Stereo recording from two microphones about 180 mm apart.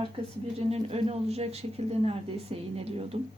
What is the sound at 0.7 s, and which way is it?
Speech, 35° right (ahead or behind).